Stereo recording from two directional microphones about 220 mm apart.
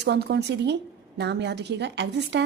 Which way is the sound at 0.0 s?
50° right (ahead or behind).